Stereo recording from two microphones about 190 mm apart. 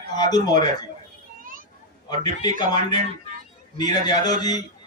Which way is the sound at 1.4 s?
45° right (ahead or behind).